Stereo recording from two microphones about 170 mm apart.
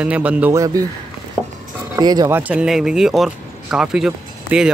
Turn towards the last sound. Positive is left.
turn(degrees=-5)  # may be behind; listen again after turning